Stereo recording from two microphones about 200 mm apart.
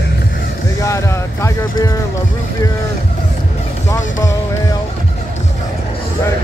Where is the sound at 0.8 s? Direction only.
15° left (ahead or behind).